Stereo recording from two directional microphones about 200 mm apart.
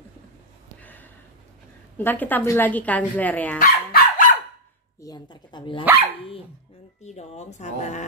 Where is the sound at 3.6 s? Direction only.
40° left (ahead or behind).